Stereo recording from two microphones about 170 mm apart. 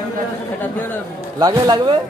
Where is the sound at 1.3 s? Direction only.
25° right (ahead or behind).